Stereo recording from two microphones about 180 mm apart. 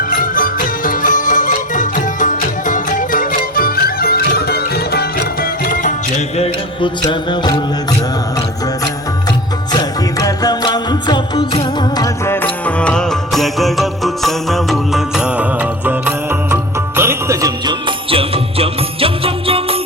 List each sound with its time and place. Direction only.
0.1 s music: 50° left (ahead or behind); by 6.9 s 35° left (ahead or behind)
7.0 s music: 25° left (ahead or behind)
9.7 s music: 20° left (ahead or behind); by 19.8 s 30° right (ahead or behind)